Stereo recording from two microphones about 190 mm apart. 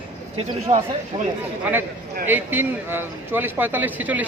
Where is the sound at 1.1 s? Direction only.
20° right (ahead or behind).